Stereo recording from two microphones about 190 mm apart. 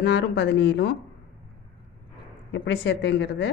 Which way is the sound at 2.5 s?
70° left (ahead or behind).